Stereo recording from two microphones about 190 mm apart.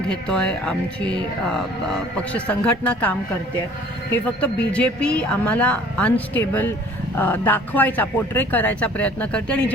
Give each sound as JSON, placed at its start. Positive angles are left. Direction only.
{"t": 0.1, "sound": "speech", "side_deg": 5}
{"t": 2.1, "sound": "speech", "side_deg": 5}